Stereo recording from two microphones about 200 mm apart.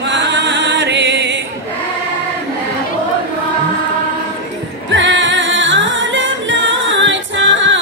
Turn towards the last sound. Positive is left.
turn(degrees=-70)  # may be behind; listen again after turning